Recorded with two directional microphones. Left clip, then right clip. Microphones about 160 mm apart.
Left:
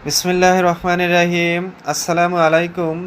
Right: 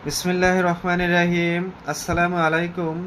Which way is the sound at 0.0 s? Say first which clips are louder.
Left 6 dB; 25° left (ahead or behind).